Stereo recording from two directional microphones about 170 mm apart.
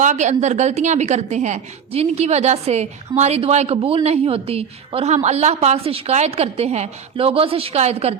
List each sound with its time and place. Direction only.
0.0 s a woman's voice: 45° right (ahead or behind)